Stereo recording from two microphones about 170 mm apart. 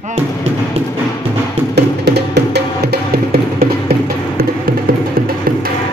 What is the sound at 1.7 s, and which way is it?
Music, 75° right (ahead or behind).